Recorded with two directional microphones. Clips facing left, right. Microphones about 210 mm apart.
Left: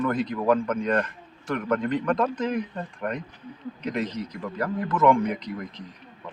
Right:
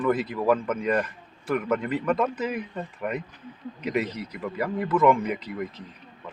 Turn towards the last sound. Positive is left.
turn(degrees=-5)  # may be behind; listen again after turning